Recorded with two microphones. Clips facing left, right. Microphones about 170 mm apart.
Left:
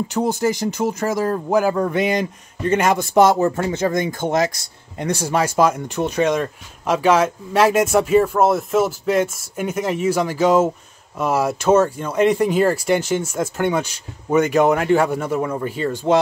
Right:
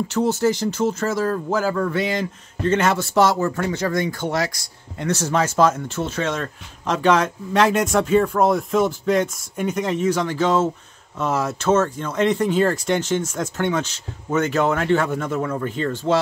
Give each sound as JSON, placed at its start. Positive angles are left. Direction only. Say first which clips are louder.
{"t": 0.1, "sound": "speech", "louder": "right 1 dB", "side_deg": 15}